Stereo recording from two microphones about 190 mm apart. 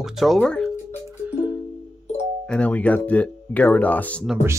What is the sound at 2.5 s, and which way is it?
Speech, 5° left (ahead or behind).